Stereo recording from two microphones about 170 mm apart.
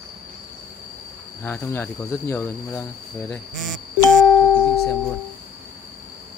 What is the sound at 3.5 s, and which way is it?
Speech, centre (ahead or behind).